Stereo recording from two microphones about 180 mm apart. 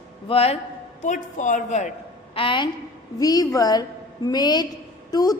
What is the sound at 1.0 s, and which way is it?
Speech, 45° left (ahead or behind).